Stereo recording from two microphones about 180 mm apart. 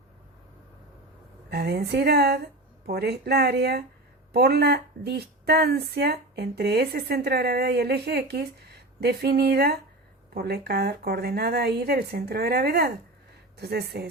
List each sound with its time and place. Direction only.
1.5 s speech: 65° right (ahead or behind)